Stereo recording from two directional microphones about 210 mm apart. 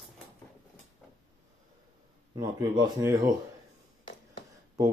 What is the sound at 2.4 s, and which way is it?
Speech, 20° right (ahead or behind).